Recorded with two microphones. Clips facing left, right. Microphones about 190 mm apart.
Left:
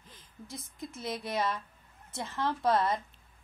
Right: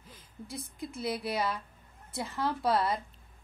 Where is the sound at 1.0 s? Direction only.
5° right (ahead or behind).